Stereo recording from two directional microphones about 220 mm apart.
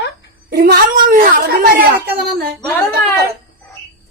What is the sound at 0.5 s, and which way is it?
A woman's voice, 40° right (ahead or behind).